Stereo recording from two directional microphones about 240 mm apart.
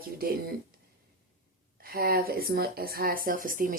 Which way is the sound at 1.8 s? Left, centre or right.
Right.